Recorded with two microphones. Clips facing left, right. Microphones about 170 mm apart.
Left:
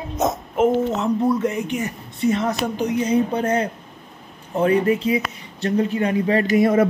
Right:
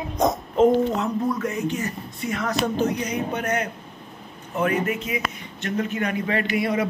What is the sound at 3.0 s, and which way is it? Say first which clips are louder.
Speech: left 7 dB; 30° left (ahead or behind).